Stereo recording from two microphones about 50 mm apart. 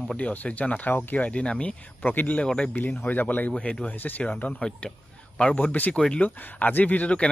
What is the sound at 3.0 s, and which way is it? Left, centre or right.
Speech, left.